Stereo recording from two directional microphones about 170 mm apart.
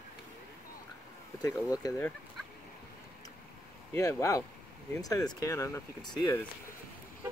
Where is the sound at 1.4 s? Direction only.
20° left (ahead or behind).